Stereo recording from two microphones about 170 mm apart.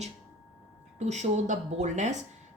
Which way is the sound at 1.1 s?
40° right (ahead or behind).